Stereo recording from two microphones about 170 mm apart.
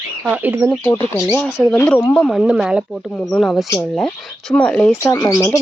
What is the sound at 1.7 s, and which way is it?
Speech, 5° left (ahead or behind).